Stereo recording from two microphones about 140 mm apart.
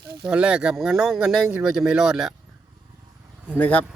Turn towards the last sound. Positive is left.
turn(degrees=10)  # may be behind; listen again after turning